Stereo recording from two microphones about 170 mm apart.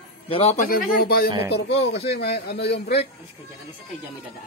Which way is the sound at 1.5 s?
80° left.